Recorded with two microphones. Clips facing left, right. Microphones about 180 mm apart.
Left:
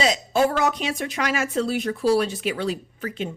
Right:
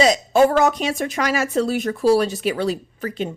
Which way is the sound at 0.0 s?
45° right (ahead or behind).